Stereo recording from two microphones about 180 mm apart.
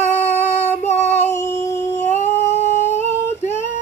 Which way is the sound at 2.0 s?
40° left (ahead or behind).